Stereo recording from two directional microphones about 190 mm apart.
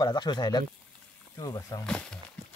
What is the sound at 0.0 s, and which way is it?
Speech, 25° left (ahead or behind).